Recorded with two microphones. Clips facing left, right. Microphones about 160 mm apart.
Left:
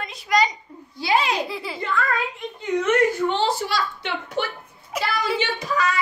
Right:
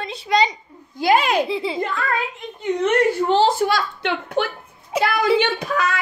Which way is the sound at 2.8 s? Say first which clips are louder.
Right 3 dB; 35° right (ahead or behind).